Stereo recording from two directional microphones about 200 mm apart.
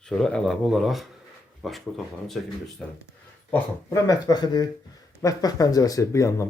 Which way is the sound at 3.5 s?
15° left (ahead or behind).